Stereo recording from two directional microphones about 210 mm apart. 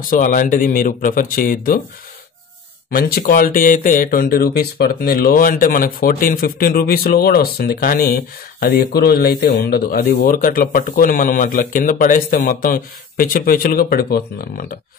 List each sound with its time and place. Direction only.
0.0 s speech: 40° left (ahead or behind)
2.9 s speech: 45° left (ahead or behind)